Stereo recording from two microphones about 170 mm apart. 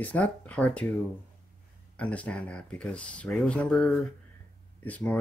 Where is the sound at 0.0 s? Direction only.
10° left (ahead or behind).